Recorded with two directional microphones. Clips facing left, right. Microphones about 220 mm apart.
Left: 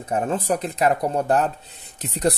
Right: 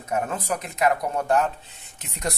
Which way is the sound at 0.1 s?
30° left (ahead or behind).